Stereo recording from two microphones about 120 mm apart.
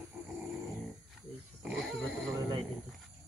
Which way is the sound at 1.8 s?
Centre (ahead or behind).